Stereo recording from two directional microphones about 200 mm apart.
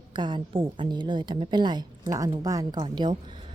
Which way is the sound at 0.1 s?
25° right (ahead or behind).